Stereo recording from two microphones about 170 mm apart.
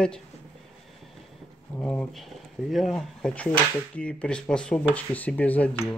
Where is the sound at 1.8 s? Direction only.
10° left (ahead or behind).